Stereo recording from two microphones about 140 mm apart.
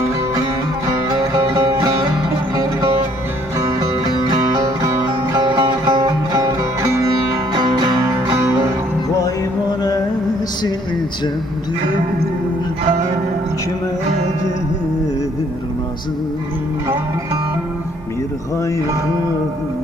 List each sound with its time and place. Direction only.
0.9 s music: 25° right (ahead or behind)
3.6 s music: 30° right (ahead or behind)
8.4 s music: 20° right (ahead or behind)